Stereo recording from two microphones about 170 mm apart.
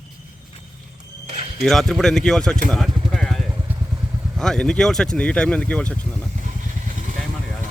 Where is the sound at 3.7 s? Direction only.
10° right (ahead or behind).